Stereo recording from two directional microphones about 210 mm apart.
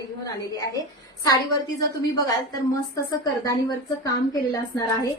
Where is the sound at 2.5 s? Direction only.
15° left (ahead or behind).